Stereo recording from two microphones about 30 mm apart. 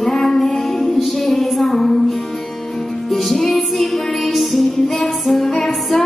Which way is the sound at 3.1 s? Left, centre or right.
Centre.